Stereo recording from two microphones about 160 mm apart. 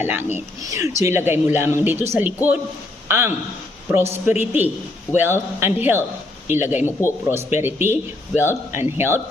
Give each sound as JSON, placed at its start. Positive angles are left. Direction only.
{"t": 0.0, "sound": "speech", "side_deg": -15}